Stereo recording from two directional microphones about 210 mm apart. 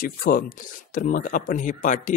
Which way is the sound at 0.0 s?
45° left (ahead or behind).